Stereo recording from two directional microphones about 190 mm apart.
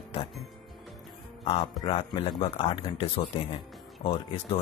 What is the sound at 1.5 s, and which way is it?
Speech, 25° left (ahead or behind).